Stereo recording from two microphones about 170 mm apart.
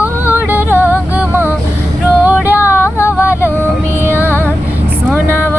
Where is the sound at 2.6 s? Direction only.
15° left (ahead or behind).